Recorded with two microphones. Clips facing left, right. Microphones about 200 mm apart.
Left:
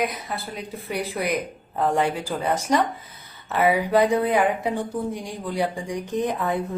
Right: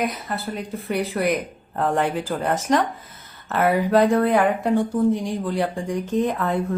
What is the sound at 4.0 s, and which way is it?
Speech, 15° left (ahead or behind).